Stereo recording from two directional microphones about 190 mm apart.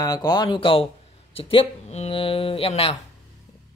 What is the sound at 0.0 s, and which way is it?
Speech, 20° left (ahead or behind).